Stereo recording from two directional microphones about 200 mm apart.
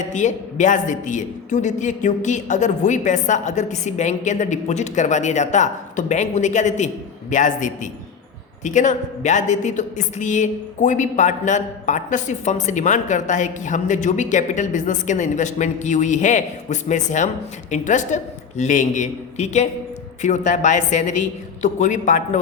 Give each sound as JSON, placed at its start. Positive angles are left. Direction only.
{"t": 0.1, "sound": "a woman's voice", "side_deg": 35}